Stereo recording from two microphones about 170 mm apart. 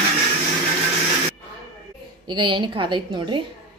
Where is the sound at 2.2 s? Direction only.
25° right (ahead or behind).